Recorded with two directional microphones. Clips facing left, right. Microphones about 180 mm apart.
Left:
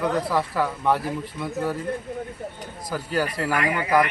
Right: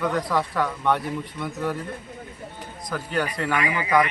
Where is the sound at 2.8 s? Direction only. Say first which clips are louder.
Left 1 dB; 5° left (ahead or behind).